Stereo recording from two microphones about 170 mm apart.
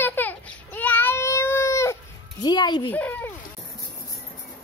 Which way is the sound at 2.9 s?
10° left (ahead or behind).